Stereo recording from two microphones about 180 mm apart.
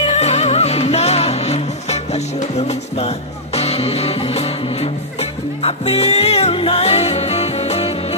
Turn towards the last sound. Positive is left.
turn(degrees=35)  # may be behind; listen again after turning